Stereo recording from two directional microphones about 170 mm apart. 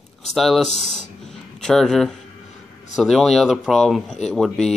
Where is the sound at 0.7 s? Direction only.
35° right (ahead or behind).